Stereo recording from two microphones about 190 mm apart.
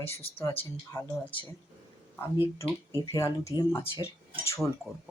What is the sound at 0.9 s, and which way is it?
Speech, 10° left (ahead or behind).